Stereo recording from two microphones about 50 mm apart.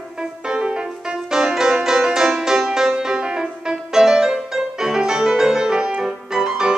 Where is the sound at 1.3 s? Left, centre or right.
Centre.